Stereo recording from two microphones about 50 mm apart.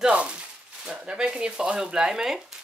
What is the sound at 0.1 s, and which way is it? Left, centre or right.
Sizzle, right.